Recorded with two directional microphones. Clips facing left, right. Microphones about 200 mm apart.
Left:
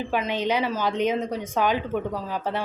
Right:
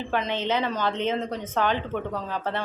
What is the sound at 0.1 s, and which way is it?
A woman's voice, 10° left (ahead or behind).